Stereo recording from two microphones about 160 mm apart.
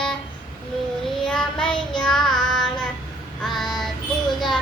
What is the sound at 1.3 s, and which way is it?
Child singing, 5° left (ahead or behind).